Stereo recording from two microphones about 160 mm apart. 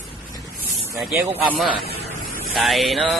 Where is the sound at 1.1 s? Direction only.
15° right (ahead or behind).